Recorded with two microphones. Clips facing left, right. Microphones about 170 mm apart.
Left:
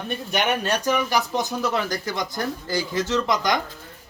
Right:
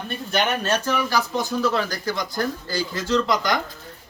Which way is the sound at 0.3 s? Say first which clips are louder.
Right 1 dB; 15° left (ahead or behind).